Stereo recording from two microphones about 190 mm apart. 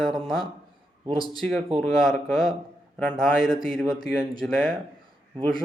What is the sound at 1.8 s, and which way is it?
A man's voice, centre (ahead or behind).